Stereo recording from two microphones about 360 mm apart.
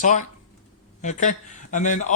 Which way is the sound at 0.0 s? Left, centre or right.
Left.